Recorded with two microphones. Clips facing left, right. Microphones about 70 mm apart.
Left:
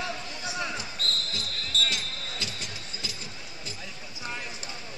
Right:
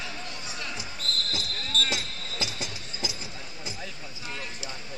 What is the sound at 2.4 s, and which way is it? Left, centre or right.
Train, centre.